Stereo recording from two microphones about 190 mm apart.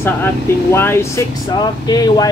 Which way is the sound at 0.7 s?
10° left (ahead or behind).